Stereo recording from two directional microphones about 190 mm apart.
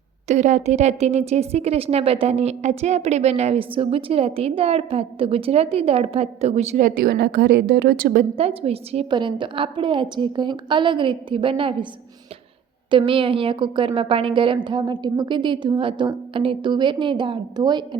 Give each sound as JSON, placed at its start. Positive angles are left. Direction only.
{"t": 0.3, "sound": "a woman's voice", "side_deg": -40}
{"t": 8.4, "sound": "a woman's voice", "side_deg": -30}
{"t": 12.9, "sound": "a woman's voice", "side_deg": -25}